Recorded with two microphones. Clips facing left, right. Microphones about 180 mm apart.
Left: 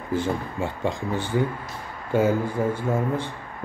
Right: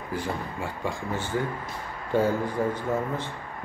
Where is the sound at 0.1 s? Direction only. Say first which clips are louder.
Left 6 dB; 25° left (ahead or behind); by 3.3 s 10° left (ahead or behind).